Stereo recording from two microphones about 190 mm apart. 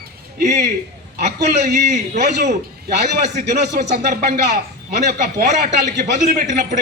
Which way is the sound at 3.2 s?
40° right (ahead or behind).